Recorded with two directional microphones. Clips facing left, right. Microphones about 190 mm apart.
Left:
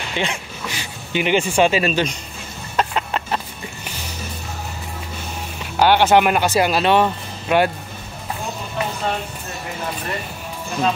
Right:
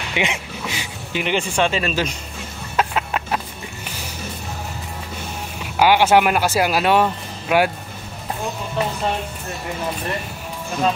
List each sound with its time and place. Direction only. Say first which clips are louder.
0.1 s a sound: right 1 dB; 20° right (ahead or behind)
1.1 s speech: left 4 dB; 5° left (ahead or behind)
2.7 s chicken: even; 5° right (ahead or behind)
5.8 s speech: even; 10° right (ahead or behind)